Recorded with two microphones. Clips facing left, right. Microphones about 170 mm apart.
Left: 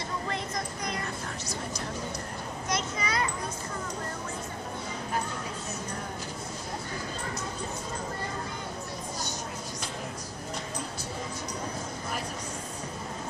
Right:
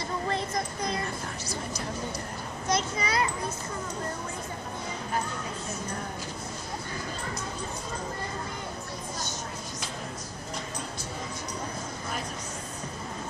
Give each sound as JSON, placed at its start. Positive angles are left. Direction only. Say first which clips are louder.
{"t": 2.7, "sound": "children playing", "louder": "right 4 dB", "side_deg": -35}